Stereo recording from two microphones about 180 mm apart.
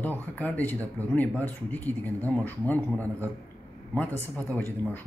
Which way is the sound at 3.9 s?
10° left (ahead or behind).